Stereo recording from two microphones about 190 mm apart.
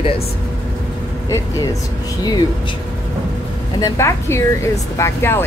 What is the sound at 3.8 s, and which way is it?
A woman's voice, 15° left (ahead or behind).